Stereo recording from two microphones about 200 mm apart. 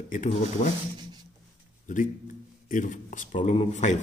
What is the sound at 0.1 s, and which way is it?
Speech, 40° left (ahead or behind).